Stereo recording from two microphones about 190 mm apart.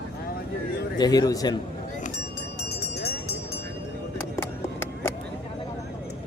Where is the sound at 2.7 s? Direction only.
60° left (ahead or behind).